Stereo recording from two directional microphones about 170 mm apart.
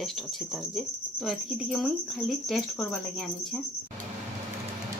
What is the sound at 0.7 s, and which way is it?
Cricket, centre (ahead or behind).